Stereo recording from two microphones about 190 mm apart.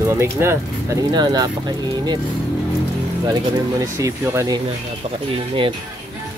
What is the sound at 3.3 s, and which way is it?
Speech, 15° right (ahead or behind).